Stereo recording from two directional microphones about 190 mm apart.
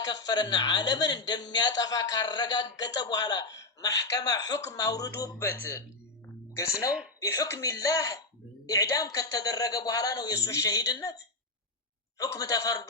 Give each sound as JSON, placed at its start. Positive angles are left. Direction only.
{"t": 0.0, "sound": "a man's voice", "side_deg": 20}
{"t": 7.2, "sound": "speech", "side_deg": 15}
{"t": 12.2, "sound": "speech", "side_deg": 15}